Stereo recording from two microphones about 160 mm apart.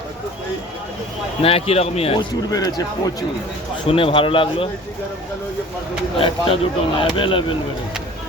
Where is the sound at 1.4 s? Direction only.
35° left (ahead or behind).